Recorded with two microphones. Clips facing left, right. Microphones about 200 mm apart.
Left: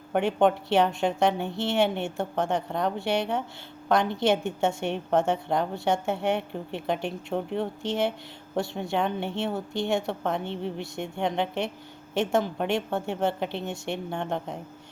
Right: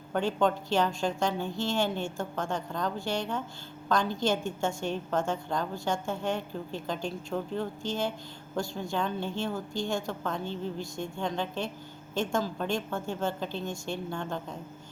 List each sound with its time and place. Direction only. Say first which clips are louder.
0.2 s a woman's voice: left 4 dB; 65° left (ahead or behind)